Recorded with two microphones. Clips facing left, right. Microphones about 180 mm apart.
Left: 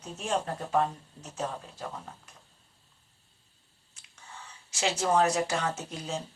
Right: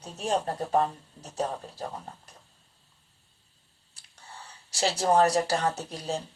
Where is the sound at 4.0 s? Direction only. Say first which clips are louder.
Even; 35° right (ahead or behind).